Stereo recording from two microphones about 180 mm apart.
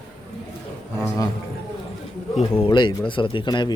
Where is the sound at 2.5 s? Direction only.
25° left (ahead or behind).